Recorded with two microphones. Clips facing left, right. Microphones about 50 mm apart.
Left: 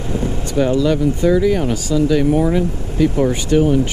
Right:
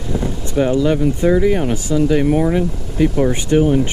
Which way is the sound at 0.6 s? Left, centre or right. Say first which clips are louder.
Even; centre.